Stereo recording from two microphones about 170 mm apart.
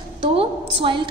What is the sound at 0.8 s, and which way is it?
Speech, 30° right (ahead or behind).